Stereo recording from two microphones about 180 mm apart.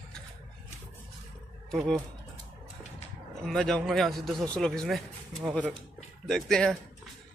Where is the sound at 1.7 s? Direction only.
Centre (ahead or behind).